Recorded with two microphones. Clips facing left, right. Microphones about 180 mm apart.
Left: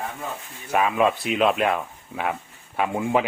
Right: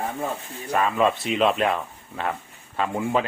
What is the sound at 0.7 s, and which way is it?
Speech, 10° left (ahead or behind).